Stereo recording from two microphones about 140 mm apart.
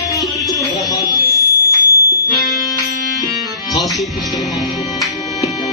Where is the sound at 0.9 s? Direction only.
20° left (ahead or behind).